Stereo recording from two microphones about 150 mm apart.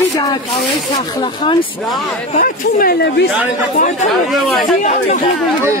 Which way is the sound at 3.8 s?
55° left (ahead or behind).